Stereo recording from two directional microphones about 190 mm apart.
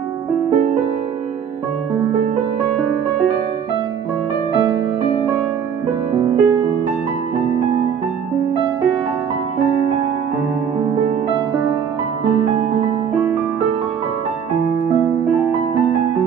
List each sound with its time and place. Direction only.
6.1 s music: 25° right (ahead or behind)